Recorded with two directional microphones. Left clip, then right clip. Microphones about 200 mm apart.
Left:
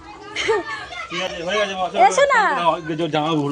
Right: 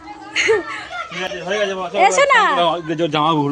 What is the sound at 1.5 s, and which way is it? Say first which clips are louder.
Speech: right 1 dB; 15° right (ahead or behind).